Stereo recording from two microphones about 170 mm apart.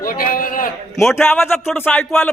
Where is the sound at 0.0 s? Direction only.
55° left (ahead or behind).